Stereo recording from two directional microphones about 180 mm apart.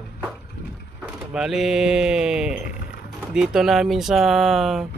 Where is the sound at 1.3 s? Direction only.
Centre (ahead or behind).